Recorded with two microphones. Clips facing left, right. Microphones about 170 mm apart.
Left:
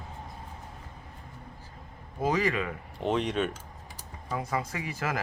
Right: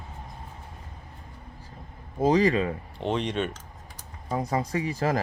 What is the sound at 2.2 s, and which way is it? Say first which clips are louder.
Speech: right 6 dB; 35° right (ahead or behind).